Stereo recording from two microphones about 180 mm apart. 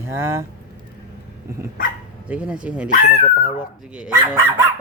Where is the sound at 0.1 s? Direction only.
15° right (ahead or behind).